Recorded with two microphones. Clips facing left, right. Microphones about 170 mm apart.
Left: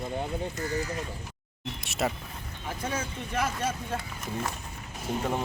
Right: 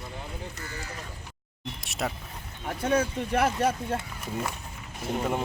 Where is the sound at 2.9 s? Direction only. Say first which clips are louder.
Right 10 dB; 60° right (ahead or behind).